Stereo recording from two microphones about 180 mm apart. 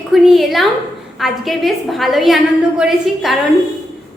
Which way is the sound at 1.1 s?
Centre (ahead or behind).